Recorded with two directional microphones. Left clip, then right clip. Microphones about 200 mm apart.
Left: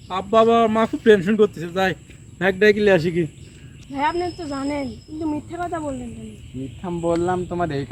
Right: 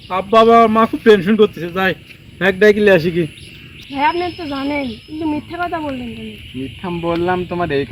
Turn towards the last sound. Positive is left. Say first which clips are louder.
# right 6 dB
turn(degrees=30)  # may be behind; listen again after turning